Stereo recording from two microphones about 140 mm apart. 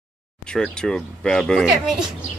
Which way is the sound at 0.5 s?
5° left (ahead or behind).